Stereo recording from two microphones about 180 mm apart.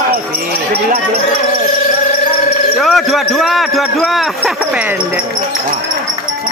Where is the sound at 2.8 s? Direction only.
Centre (ahead or behind).